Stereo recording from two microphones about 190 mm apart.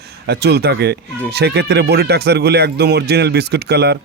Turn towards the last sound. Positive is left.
turn(degrees=-60)  # may be behind; listen again after turning